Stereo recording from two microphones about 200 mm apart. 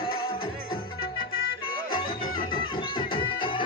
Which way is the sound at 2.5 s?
25° left (ahead or behind).